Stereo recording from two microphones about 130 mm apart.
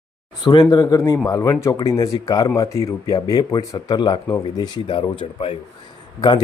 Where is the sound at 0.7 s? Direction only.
25° left (ahead or behind).